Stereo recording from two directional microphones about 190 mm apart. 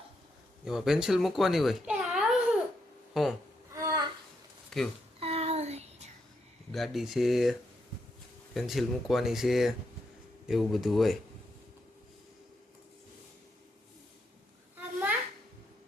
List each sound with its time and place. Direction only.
0.6 s speech: 5° right (ahead or behind)
3.7 s a sound: 15° right (ahead or behind)
4.7 s speech: centre (ahead or behind)
5.2 s a sound: 30° right (ahead or behind)
6.7 s speech: centre (ahead or behind)
8.5 s speech: centre (ahead or behind)